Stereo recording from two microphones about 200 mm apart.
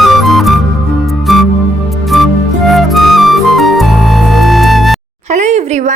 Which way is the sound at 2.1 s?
Centre (ahead or behind).